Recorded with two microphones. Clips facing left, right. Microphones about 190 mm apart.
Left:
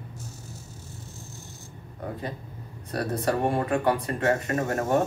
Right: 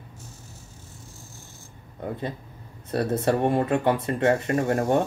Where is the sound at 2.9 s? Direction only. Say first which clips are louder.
Right 3 dB; 25° right (ahead or behind).